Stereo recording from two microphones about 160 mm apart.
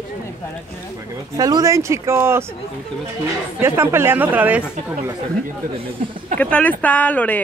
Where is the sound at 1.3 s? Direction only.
20° right (ahead or behind).